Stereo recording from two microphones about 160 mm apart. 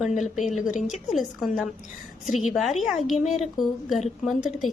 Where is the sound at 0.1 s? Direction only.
50° left (ahead or behind).